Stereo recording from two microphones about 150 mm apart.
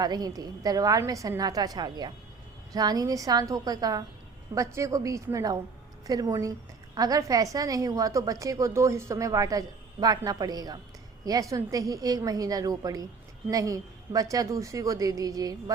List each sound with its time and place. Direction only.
0.0 s a woman's voice: 25° right (ahead or behind)